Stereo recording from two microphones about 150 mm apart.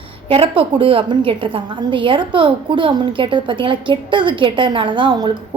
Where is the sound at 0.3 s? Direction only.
40° right (ahead or behind).